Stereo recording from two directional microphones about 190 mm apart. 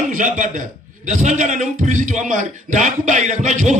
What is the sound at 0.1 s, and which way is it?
A man's voice, 40° right (ahead or behind).